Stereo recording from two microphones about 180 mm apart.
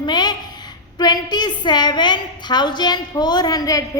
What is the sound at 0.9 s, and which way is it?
A woman's voice, 20° left (ahead or behind).